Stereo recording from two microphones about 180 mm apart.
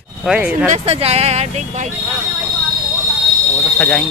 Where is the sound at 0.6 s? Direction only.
35° right (ahead or behind).